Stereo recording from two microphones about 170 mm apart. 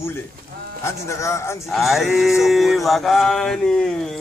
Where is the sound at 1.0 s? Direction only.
15° left (ahead or behind).